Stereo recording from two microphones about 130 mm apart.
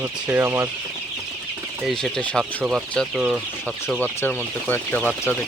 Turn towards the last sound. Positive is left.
turn(degrees=10)  # may be behind; listen again after turning